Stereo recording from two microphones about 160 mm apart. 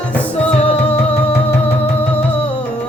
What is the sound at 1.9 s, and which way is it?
Music, 10° left (ahead or behind).